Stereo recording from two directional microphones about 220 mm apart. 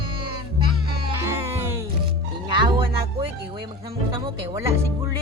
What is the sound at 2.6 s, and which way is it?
Speech, 20° right (ahead or behind).